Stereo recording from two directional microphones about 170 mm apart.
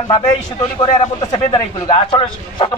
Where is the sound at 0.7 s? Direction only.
20° left (ahead or behind).